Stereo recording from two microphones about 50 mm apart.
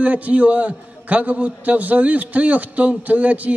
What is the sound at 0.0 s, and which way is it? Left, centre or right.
A man's voice, right.